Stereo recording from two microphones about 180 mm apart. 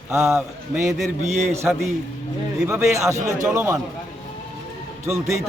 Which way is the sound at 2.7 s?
15° right (ahead or behind).